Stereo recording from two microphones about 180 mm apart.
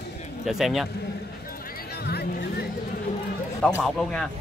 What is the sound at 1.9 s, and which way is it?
Music, 60° left (ahead or behind).